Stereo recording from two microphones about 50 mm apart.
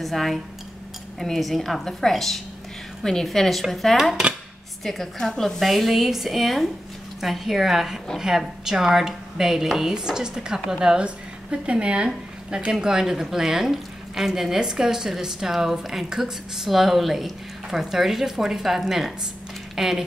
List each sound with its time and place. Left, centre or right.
0.0 s a woman's voice: centre